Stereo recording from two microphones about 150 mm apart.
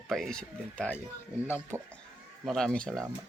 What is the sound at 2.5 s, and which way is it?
Speech, 5° left (ahead or behind).